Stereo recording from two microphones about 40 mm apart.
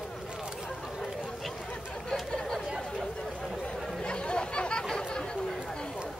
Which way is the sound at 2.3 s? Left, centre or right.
Centre.